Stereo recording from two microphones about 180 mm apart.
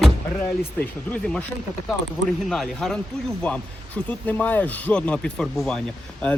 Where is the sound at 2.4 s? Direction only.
5° left (ahead or behind).